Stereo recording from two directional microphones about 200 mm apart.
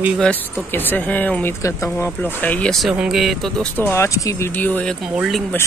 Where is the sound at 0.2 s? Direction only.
10° left (ahead or behind).